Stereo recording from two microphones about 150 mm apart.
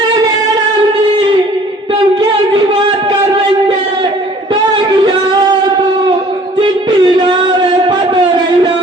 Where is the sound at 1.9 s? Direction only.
35° right (ahead or behind).